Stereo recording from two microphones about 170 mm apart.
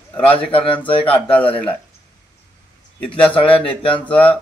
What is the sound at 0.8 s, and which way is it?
Speech, 30° left (ahead or behind).